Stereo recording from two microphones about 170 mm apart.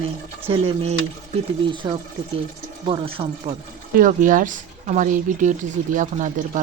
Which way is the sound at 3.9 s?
50° right (ahead or behind).